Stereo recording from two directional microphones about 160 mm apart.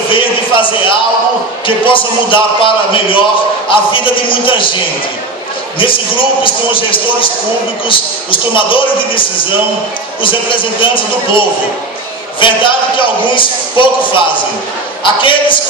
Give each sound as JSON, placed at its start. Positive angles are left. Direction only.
{"t": 0.1, "sound": "a sound", "side_deg": 30}
{"t": 1.9, "sound": "a man's voice", "side_deg": 30}
{"t": 5.8, "sound": "a man's voice", "side_deg": 35}